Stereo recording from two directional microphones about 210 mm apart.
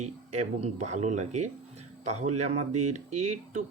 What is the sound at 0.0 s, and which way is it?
Speech, 30° right (ahead or behind).